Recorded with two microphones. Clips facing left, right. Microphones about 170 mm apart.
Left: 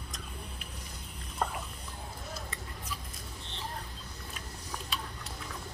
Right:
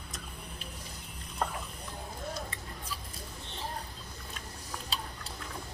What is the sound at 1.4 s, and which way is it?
Boat, centre (ahead or behind).